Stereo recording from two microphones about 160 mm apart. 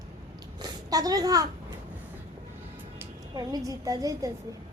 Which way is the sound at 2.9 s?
20° right (ahead or behind).